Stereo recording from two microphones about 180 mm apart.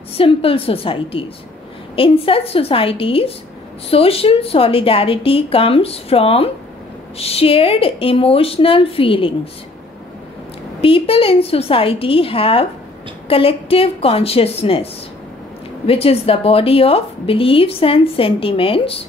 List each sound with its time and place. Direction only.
0.2 s a woman's voice: 30° left (ahead or behind)
10.8 s a woman's voice: 30° left (ahead or behind)
15.9 s a woman's voice: 30° left (ahead or behind)